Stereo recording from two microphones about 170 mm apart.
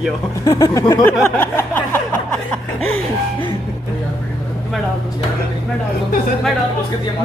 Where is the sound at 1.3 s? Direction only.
10° left (ahead or behind).